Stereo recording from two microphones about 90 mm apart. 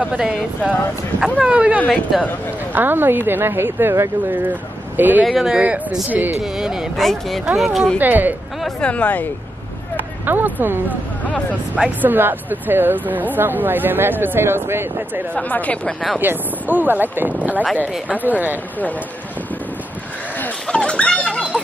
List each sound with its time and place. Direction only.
0.0 s speech: 10° right (ahead or behind)
2.1 s speech: centre (ahead or behind)
2.7 s speech: 25° right (ahead or behind)
5.2 s speech: 5° right (ahead or behind)
5.6 s speech: 15° right (ahead or behind)
6.4 s speech: 5° right (ahead or behind)
8.0 s speech: 20° right (ahead or behind)
8.8 s speech: 15° left (ahead or behind)
10.2 s speech: 20° right (ahead or behind)
15.3 s speech: 15° left (ahead or behind)
16.2 s speech: 20° right (ahead or behind)
20.6 s a sound: 10° left (ahead or behind)